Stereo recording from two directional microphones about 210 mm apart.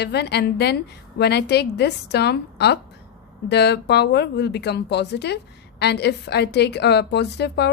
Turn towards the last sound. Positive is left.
turn(degrees=55)  # may be behind; listen again after turning